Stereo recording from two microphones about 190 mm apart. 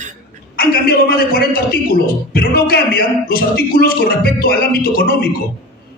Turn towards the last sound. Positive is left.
turn(degrees=55)  # may be behind; listen again after turning